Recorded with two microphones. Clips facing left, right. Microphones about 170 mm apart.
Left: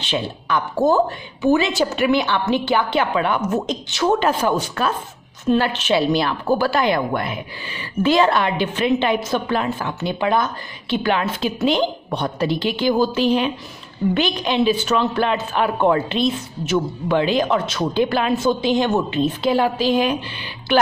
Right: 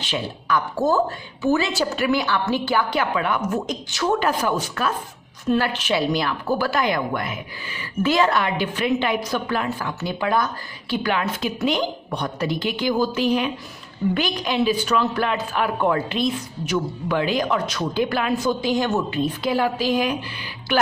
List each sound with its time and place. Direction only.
0.0 s a woman's voice: 25° left (ahead or behind)